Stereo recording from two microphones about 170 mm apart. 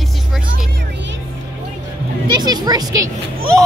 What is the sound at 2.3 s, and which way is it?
Speech, 25° right (ahead or behind).